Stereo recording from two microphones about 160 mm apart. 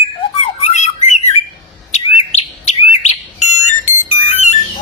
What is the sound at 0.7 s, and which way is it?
Squawk, 45° left (ahead or behind).